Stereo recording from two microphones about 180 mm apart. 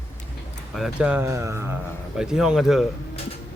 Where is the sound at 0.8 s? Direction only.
5° right (ahead or behind).